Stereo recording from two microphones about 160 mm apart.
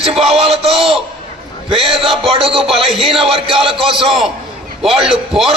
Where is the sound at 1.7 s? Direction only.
35° right (ahead or behind).